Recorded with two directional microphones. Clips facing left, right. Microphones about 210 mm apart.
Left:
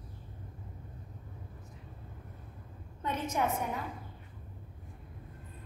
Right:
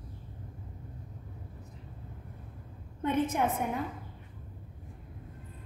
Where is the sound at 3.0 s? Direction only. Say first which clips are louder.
Right 5 dB; 55° right (ahead or behind).